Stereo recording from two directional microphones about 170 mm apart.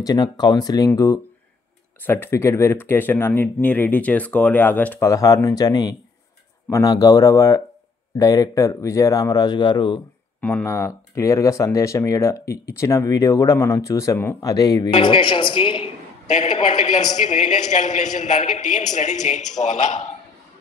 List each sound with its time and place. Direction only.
0.0 s speech: 25° left (ahead or behind)
10.4 s a woman's voice: 10° left (ahead or behind); by 15.9 s 30° left (ahead or behind)
16.3 s a man's voice: 40° left (ahead or behind)